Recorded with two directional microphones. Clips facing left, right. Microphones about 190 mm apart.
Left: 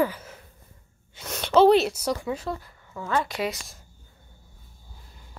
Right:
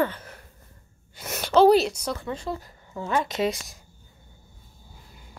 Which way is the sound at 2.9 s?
20° right (ahead or behind).